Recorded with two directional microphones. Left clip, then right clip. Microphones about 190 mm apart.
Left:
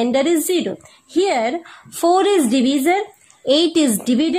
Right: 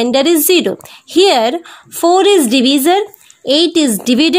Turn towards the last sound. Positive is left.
turn(degrees=-15)  # may be behind; listen again after turning